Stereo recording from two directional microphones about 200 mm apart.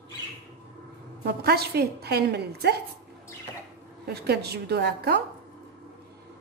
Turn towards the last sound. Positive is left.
turn(degrees=-55)  # may be behind; listen again after turning